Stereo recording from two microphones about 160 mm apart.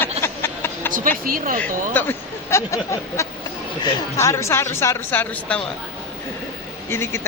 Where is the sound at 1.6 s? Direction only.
10° left (ahead or behind).